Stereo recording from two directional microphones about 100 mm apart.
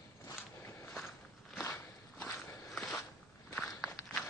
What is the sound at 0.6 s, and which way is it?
Walk, 25° left (ahead or behind).